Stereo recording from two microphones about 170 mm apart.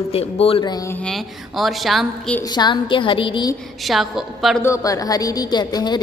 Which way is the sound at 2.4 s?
25° left (ahead or behind).